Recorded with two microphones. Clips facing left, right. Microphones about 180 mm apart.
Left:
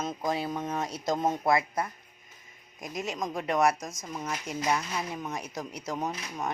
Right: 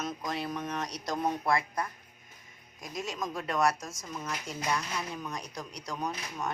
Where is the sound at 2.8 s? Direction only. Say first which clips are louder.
Left 3 dB; centre (ahead or behind).